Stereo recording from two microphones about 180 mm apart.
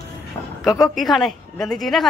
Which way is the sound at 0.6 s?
20° left (ahead or behind).